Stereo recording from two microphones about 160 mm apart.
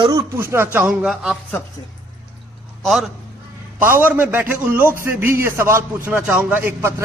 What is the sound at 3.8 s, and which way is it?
A man's voice, 10° right (ahead or behind).